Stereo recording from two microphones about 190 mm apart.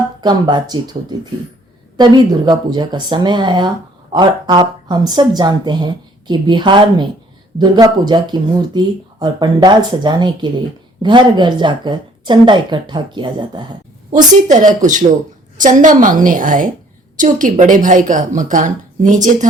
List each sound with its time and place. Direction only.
0.2 s speech: 25° right (ahead or behind)
14.4 s a woman's voice: 40° right (ahead or behind)